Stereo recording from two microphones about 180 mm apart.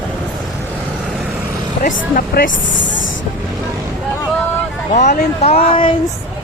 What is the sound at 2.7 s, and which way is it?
Vehicle, 90° left.